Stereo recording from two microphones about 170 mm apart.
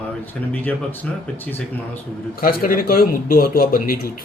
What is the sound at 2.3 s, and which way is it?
A man's voice, 60° left (ahead or behind).